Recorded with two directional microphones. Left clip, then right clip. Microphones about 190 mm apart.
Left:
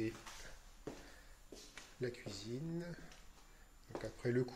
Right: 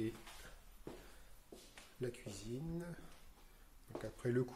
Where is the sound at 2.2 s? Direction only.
10° right (ahead or behind).